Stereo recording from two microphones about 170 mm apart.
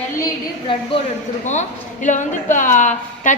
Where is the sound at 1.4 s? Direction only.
45° left (ahead or behind).